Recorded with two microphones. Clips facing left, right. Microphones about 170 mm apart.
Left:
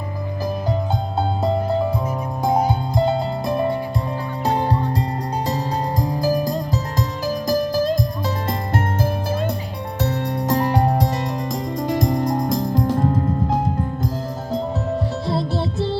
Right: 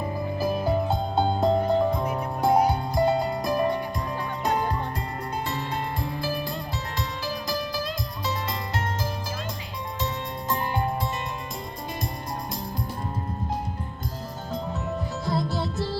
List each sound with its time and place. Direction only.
1.4 s music: centre (ahead or behind)
2.4 s music: 20° left (ahead or behind); by 7.9 s 45° left (ahead or behind)
10.5 s music: 75° left (ahead or behind)
11.9 s music: 90° left
15.3 s music: 30° left (ahead or behind)